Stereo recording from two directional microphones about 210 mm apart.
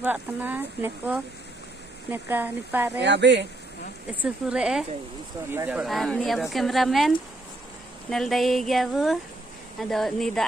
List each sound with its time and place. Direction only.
0.0 s speech: 10° right (ahead or behind)
3.0 s speech: 55° right (ahead or behind)
4.1 s speech: 5° right (ahead or behind)